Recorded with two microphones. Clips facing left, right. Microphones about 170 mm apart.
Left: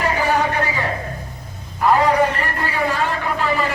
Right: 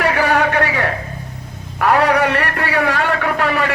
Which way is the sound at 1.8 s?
70° right (ahead or behind).